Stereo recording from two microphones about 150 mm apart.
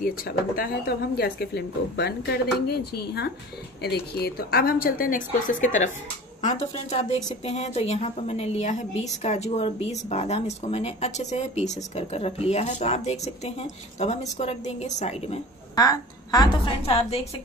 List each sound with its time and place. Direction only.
0.0 s a woman's voice: 75° left (ahead or behind); by 5.9 s 60° left (ahead or behind)
6.4 s a woman's voice: 45° left (ahead or behind)
15.7 s a woman's voice: 25° left (ahead or behind)